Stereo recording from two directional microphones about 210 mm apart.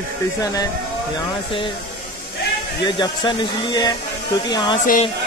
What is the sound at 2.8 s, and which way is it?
Speech, 20° left (ahead or behind).